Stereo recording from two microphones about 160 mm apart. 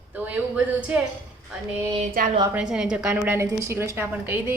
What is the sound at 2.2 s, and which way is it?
Speech, 60° right (ahead or behind).